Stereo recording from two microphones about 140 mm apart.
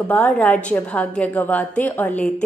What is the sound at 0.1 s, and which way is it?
A woman's voice, 10° left (ahead or behind).